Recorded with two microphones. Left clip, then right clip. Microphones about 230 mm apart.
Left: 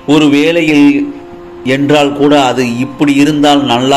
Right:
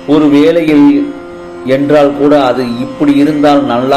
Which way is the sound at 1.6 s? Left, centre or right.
Left.